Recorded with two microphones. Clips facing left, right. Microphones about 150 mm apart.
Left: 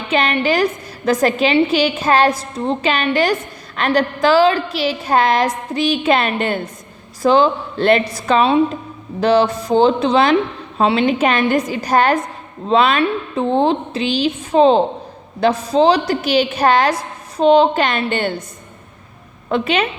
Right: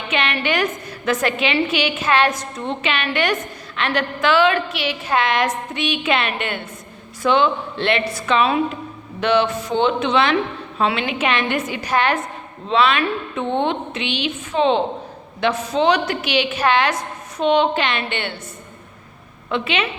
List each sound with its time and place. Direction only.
0.1 s a woman's voice: 35° left (ahead or behind)
19.5 s a woman's voice: 40° left (ahead or behind)